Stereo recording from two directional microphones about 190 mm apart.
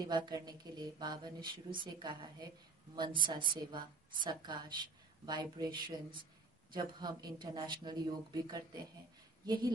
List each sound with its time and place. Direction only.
0.0 s speech: 20° right (ahead or behind)